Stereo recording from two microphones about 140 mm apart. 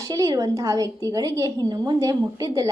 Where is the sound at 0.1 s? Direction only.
25° right (ahead or behind).